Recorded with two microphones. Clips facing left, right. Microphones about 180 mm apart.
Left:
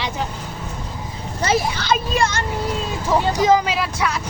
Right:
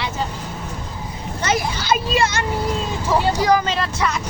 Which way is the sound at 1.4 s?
30° left (ahead or behind).